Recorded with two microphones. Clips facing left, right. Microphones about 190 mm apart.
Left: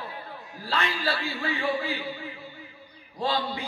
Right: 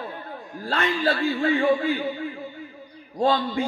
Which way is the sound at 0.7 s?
50° right (ahead or behind).